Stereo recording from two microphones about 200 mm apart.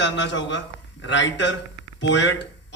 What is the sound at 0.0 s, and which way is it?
A man's voice, 65° left (ahead or behind).